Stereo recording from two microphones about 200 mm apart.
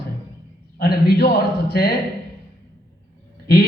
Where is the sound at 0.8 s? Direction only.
50° left (ahead or behind).